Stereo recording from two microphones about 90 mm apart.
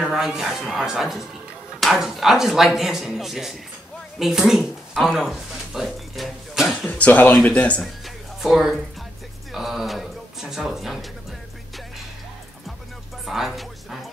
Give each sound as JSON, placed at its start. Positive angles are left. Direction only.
{"t": 0.1, "sound": "speech", "side_deg": -5}
{"t": 4.2, "sound": "a sound", "side_deg": -5}
{"t": 6.9, "sound": "speech", "side_deg": 15}
{"t": 8.4, "sound": "a woman's voice", "side_deg": -5}
{"t": 9.5, "sound": "a sound", "side_deg": -5}
{"t": 13.2, "sound": "music", "side_deg": 0}